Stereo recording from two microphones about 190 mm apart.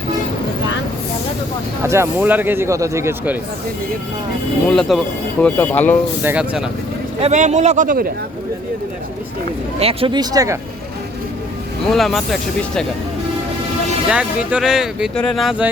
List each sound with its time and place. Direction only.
1.8 s speech: 15° right (ahead or behind)
4.7 s speech: centre (ahead or behind)
6.2 s speech: 5° right (ahead or behind)
7.2 s speech: 35° right (ahead or behind)
9.8 s speech: 25° right (ahead or behind)
11.9 s speech: centre (ahead or behind)
14.1 s speech: 5° right (ahead or behind)